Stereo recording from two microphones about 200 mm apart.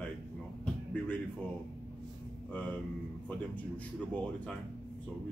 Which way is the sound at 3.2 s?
5° left (ahead or behind).